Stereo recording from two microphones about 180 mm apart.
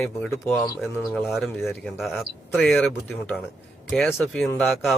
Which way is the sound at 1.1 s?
Centre (ahead or behind).